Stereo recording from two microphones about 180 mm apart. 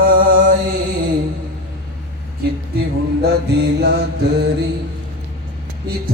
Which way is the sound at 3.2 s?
65° right (ahead or behind).